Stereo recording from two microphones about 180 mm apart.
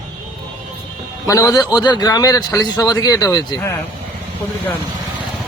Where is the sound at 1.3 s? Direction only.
20° left (ahead or behind).